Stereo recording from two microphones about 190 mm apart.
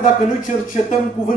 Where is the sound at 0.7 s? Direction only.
45° left (ahead or behind).